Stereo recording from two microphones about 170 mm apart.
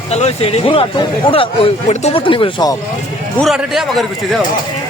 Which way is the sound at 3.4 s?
Centre (ahead or behind).